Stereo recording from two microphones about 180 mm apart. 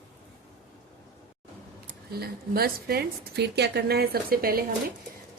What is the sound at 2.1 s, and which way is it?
A woman's voice, 60° right (ahead or behind).